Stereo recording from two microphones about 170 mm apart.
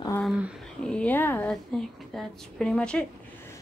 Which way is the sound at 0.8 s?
10° left (ahead or behind).